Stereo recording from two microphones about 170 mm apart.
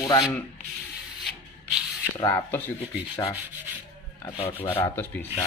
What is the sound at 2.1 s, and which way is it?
Speech, 15° left (ahead or behind).